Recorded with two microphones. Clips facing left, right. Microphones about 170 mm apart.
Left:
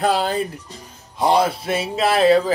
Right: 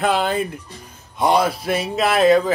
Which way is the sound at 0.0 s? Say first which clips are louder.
Even; 35° left (ahead or behind).